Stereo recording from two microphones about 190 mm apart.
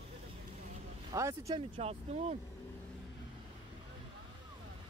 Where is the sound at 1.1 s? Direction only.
15° right (ahead or behind).